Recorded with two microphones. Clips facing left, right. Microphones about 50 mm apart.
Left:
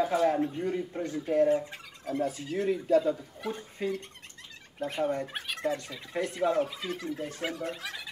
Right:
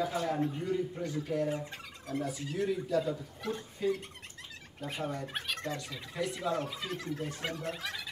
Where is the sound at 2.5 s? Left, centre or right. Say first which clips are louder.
Left 3 dB; left.